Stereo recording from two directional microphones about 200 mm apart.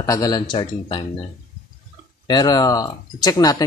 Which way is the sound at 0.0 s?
15° left (ahead or behind).